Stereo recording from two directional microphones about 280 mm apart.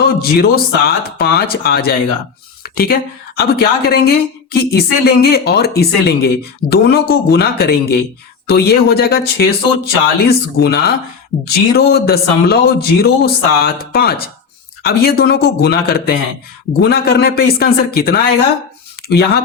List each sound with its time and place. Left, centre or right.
0.0 s speech: left